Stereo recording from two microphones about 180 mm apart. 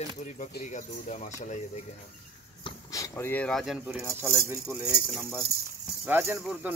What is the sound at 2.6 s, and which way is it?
Speech, 20° left (ahead or behind).